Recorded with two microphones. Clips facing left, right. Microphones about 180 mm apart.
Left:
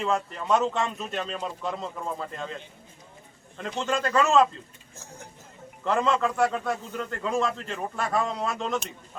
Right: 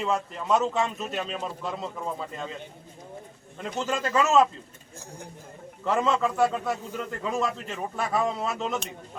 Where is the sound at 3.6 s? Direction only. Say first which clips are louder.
Left 1 dB; 5° right (ahead or behind).